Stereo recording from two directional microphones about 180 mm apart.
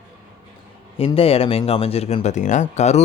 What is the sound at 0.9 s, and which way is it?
Speech, 30° left (ahead or behind).